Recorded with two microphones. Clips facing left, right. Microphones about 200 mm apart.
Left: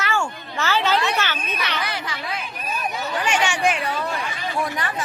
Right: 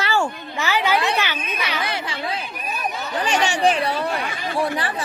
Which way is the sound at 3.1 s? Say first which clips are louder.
Right 2 dB; 35° right (ahead or behind).